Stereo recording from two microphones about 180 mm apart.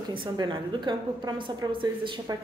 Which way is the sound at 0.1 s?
25° right (ahead or behind).